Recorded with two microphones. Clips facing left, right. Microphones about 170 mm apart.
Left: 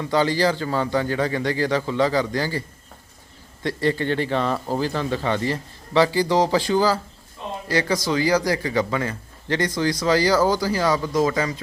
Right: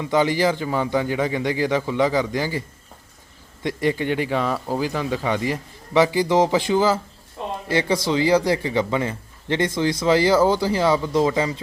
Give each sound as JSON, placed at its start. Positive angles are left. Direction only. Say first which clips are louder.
{"t": 0.0, "sound": "speech", "louder": "right 1 dB", "side_deg": -15}